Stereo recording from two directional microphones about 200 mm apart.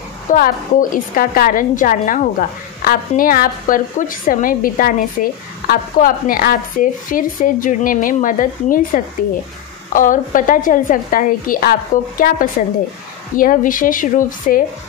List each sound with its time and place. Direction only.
0.3 s a woman's voice: 45° left (ahead or behind)